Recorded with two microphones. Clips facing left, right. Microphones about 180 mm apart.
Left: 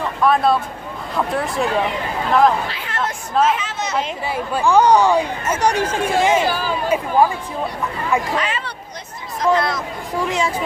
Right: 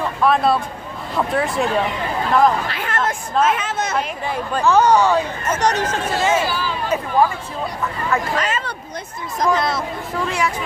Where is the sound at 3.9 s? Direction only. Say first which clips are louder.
Even; 5° left (ahead or behind).